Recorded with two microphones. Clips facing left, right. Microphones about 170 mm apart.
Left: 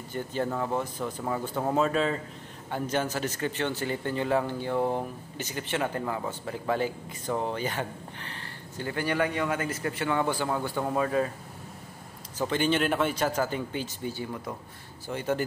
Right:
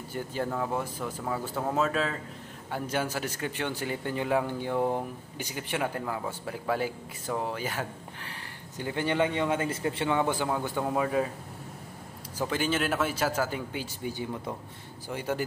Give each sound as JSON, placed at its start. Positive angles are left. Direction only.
{"t": 0.1, "sound": "speech", "side_deg": -10}
{"t": 8.7, "sound": "a man's voice", "side_deg": -20}
{"t": 12.4, "sound": "speech", "side_deg": -5}